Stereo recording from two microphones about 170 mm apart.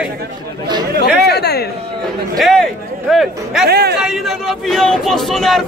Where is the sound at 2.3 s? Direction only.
Centre (ahead or behind).